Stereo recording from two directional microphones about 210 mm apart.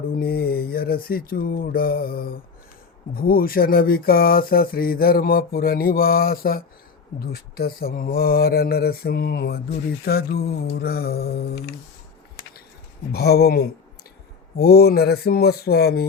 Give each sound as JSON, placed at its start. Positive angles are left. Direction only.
{"t": 0.1, "sound": "a sound", "side_deg": 45}
{"t": 3.2, "sound": "speech", "side_deg": 45}
{"t": 13.1, "sound": "speech", "side_deg": 50}